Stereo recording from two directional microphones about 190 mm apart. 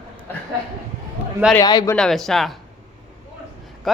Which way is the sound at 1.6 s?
20° left (ahead or behind).